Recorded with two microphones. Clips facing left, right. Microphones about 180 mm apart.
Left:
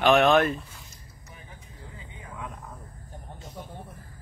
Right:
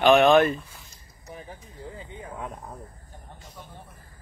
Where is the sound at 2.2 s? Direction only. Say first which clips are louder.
Right 2 dB; 35° right (ahead or behind).